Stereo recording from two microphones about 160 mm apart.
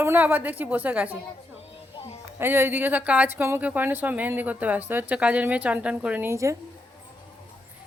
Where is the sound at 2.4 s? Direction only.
15° right (ahead or behind).